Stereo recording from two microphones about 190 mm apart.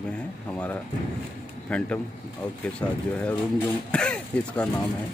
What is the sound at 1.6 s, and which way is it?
Speech, 5° left (ahead or behind).